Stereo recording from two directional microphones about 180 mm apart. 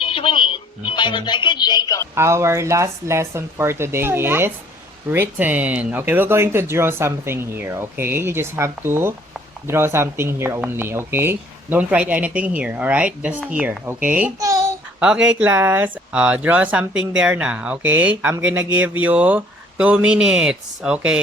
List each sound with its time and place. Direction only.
0.0 s speech: 30° left (ahead or behind)
2.1 s a child's voice: 15° right (ahead or behind)
15.0 s speech: 5° right (ahead or behind)